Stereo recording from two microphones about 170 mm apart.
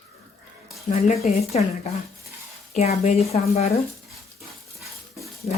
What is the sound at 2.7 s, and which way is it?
Speech, 40° left (ahead or behind).